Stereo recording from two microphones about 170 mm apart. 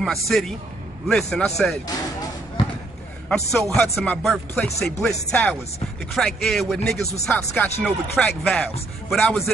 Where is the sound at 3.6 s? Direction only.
15° left (ahead or behind).